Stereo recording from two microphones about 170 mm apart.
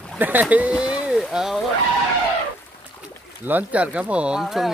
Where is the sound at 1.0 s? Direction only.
5° right (ahead or behind).